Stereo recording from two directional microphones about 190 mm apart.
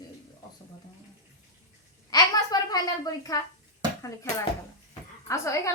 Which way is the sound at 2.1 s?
20° left (ahead or behind).